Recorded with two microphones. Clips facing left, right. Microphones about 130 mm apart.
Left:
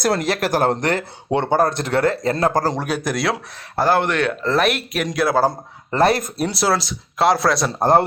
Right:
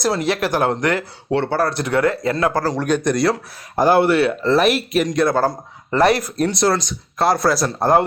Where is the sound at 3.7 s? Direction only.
10° right (ahead or behind); by 5.4 s 5° left (ahead or behind).